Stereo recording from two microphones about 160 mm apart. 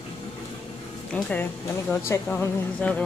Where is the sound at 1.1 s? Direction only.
5° left (ahead or behind).